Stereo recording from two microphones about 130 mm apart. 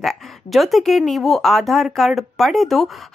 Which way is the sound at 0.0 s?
Centre (ahead or behind).